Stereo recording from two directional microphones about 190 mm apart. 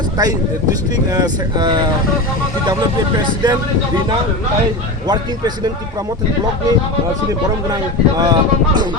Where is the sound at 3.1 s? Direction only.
20° right (ahead or behind).